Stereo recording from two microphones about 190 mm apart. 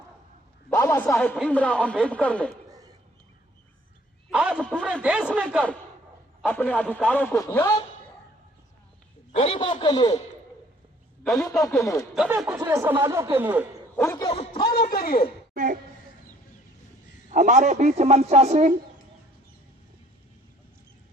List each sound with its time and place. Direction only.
0.7 s a man's voice: 15° left (ahead or behind)
4.3 s a man's voice: 5° right (ahead or behind)
4.6 s speech: 5° left (ahead or behind)
5.0 s a man's voice: 5° right (ahead or behind); by 7.7 s 20° left (ahead or behind)
9.3 s a man's voice: 30° left (ahead or behind)
11.2 s a man's voice: centre (ahead or behind)
11.8 s a man's voice: 15° left (ahead or behind)
12.1 s speech: 5° right (ahead or behind)
13.9 s speech: 15° left (ahead or behind)
14.3 s speech: 30° left (ahead or behind)
14.8 s a man's voice: 55° left (ahead or behind)
15.5 s a sound: 45° right (ahead or behind)
17.3 s speech: 40° right (ahead or behind)